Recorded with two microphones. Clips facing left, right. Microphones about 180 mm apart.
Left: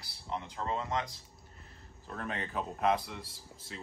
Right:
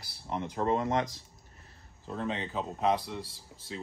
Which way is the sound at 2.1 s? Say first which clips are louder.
Right 4 dB; 20° right (ahead or behind).